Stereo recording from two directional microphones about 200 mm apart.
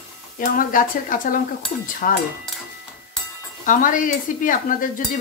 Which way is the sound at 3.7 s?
40° left (ahead or behind).